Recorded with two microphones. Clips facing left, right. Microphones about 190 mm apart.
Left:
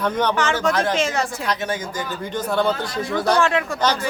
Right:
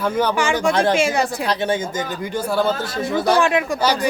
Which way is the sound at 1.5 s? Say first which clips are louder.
Right 4 dB; 30° right (ahead or behind).